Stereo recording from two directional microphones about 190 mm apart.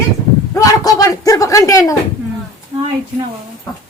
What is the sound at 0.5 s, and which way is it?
A man's voice, 20° left (ahead or behind).